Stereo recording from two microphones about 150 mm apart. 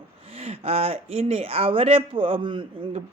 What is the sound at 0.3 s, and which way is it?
Speech, 40° right (ahead or behind).